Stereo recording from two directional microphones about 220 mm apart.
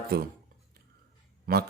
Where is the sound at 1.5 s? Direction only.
40° right (ahead or behind).